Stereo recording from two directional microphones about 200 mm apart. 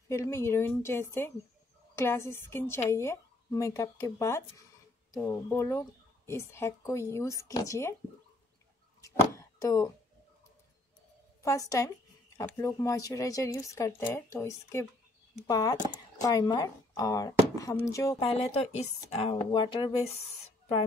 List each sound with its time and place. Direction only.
0.1 s speech: 15° left (ahead or behind)
9.6 s speech: 15° left (ahead or behind)
11.4 s speech: 15° left (ahead or behind)
18.2 s speech: 30° left (ahead or behind)